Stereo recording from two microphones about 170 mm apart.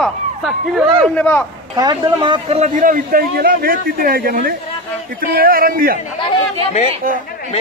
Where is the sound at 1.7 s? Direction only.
25° right (ahead or behind); by 6.0 s 60° right (ahead or behind).